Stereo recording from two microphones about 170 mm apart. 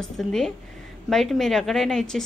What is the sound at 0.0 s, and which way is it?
A woman's voice, 5° left (ahead or behind).